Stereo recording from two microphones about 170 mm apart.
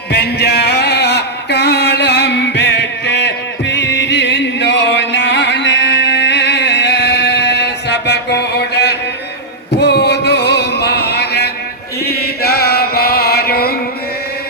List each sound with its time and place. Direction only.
0.1 s a sound: 75° left (ahead or behind)
9.7 s music: 80° left
12.0 s chant: 65° left (ahead or behind)